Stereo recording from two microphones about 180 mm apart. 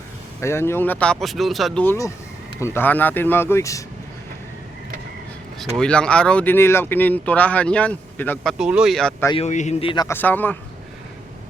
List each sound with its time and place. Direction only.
0.4 s speech: 15° left (ahead or behind)
1.8 s speech: 15° left (ahead or behind)
5.5 s speech: 5° left (ahead or behind)
8.5 s speech: 5° right (ahead or behind)
9.3 s a man's voice: 40° left (ahead or behind)
10.1 s speech: 10° left (ahead or behind)